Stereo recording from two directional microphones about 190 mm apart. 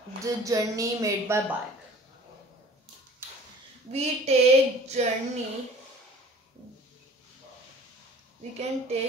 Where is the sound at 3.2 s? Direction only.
10° right (ahead or behind).